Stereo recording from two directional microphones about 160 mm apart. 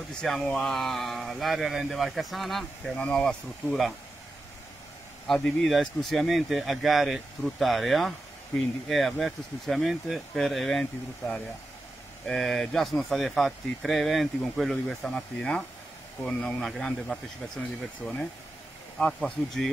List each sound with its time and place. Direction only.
0.2 s speech: 5° left (ahead or behind)
5.2 s speech: 5° left (ahead or behind)